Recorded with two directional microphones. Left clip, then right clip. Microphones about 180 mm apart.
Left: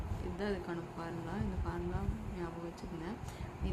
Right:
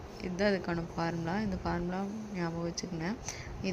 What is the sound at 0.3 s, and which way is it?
Speech, 35° right (ahead or behind).